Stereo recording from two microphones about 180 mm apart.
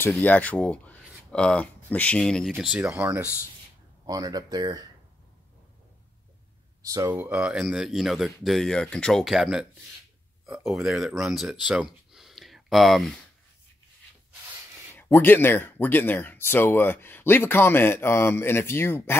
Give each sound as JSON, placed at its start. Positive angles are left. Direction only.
{"t": 0.0, "sound": "speech", "side_deg": 10}
{"t": 4.0, "sound": "speech", "side_deg": -20}
{"t": 6.8, "sound": "speech", "side_deg": -20}
{"t": 7.3, "sound": "speech", "side_deg": -5}
{"t": 15.0, "sound": "speech", "side_deg": 10}